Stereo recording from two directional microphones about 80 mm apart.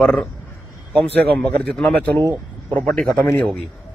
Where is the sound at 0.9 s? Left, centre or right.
Centre.